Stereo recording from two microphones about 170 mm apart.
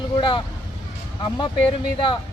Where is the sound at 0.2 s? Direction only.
30° left (ahead or behind).